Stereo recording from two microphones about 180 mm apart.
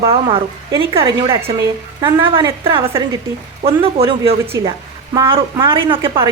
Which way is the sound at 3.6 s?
30° right (ahead or behind).